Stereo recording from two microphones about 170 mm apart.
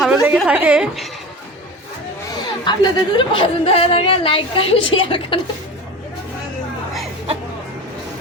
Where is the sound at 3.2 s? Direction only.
30° left (ahead or behind).